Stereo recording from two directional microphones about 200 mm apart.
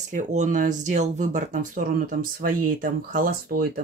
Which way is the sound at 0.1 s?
40° right (ahead or behind).